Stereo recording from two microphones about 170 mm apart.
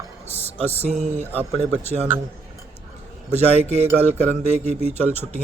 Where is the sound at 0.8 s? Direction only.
45° right (ahead or behind).